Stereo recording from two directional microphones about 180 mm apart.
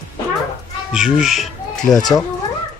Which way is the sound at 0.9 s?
5° right (ahead or behind).